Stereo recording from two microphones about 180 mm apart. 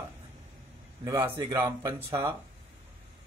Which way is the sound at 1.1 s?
20° right (ahead or behind).